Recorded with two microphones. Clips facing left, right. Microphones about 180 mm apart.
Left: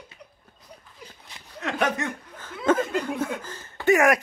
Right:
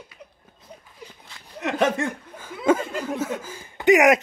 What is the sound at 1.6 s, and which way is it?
Speech, 20° right (ahead or behind).